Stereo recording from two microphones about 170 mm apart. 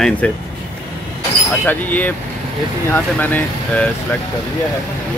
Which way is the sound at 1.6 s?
10° left (ahead or behind).